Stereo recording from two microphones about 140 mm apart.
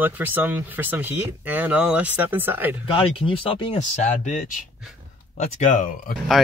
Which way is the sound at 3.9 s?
60° left (ahead or behind).